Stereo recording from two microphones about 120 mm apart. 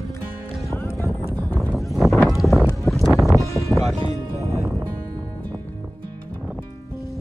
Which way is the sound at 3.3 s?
25° left (ahead or behind).